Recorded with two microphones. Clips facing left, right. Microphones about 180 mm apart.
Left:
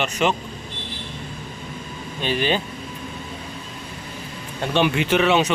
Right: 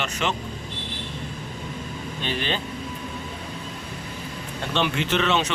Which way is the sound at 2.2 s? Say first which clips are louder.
Left 6 dB; 10° left (ahead or behind).